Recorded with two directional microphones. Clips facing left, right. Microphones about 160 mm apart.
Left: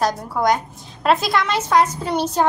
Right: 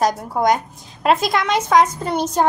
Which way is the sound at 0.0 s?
20° right (ahead or behind).